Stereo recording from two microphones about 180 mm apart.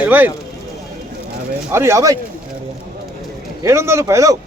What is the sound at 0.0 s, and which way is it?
Speech, 10° right (ahead or behind).